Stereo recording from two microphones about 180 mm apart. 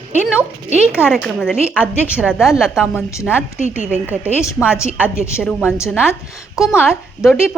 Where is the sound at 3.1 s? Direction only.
15° left (ahead or behind).